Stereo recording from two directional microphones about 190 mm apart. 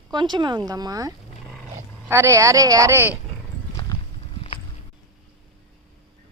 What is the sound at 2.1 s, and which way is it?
A woman's voice, 15° right (ahead or behind).